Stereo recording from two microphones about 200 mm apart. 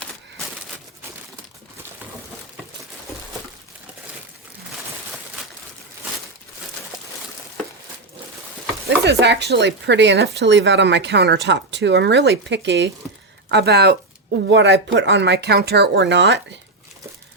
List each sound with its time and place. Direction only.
9.0 s speech: 60° right (ahead or behind)